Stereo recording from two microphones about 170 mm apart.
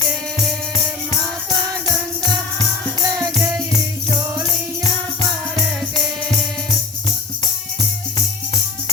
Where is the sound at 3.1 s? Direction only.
15° right (ahead or behind).